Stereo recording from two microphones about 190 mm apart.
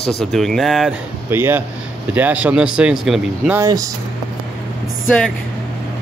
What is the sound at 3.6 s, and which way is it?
Speech, 20° right (ahead or behind).